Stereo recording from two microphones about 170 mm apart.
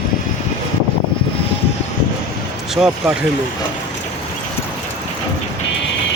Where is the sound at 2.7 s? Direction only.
5° right (ahead or behind).